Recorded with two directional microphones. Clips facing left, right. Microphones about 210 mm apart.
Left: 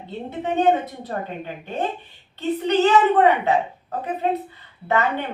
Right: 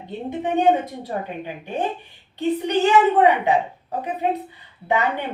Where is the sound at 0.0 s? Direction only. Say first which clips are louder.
Right 2 dB; 15° right (ahead or behind).